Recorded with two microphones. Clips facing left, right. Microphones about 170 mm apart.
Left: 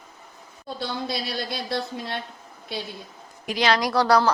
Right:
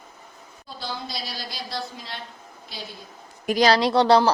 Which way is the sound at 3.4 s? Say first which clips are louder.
Right 4 dB; 45° right (ahead or behind).